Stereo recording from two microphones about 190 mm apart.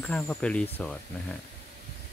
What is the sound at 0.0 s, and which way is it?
Speech, 5° left (ahead or behind).